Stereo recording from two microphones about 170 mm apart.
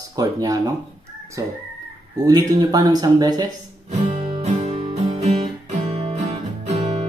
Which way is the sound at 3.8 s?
40° right (ahead or behind).